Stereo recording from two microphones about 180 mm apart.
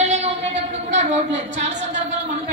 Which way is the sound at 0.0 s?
40° right (ahead or behind).